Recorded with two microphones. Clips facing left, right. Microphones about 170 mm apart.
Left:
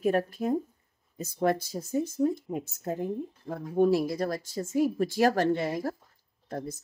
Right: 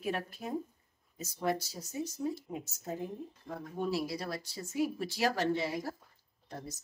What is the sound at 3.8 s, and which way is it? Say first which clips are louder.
A woman's voice: left 11 dB; 50° left (ahead or behind).